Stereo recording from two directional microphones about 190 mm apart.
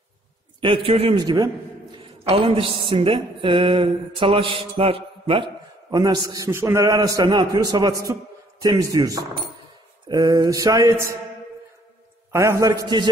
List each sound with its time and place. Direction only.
0.6 s mantra: 25° right (ahead or behind)
12.3 s a man's voice: 15° right (ahead or behind)